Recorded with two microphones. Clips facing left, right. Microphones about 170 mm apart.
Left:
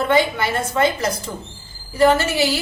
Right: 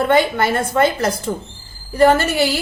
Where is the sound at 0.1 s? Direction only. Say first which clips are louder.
Right 3 dB; 55° right (ahead or behind).